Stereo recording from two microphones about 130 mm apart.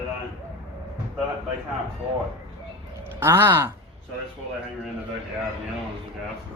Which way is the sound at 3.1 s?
20° right (ahead or behind).